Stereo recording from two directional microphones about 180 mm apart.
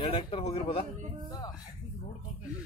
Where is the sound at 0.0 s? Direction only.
30° left (ahead or behind).